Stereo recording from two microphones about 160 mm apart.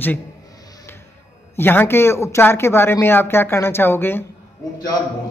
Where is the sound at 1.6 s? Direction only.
15° left (ahead or behind).